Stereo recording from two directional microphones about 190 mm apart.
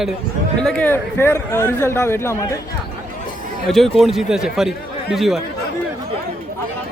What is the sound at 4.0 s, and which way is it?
Speech, centre (ahead or behind).